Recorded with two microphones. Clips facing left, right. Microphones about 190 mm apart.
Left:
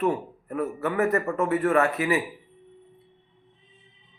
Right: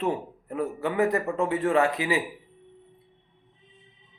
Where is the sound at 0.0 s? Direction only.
15° right (ahead or behind).